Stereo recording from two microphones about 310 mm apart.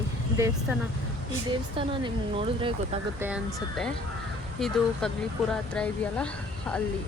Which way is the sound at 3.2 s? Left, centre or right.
Centre.